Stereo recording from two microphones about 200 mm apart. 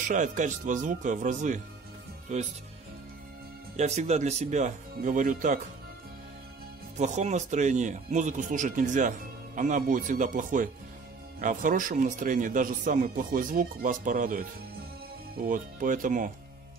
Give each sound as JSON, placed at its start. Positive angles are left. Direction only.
{"t": 0.1, "sound": "speech", "side_deg": -40}
{"t": 3.7, "sound": "speech", "side_deg": -35}
{"t": 7.0, "sound": "speech", "side_deg": -35}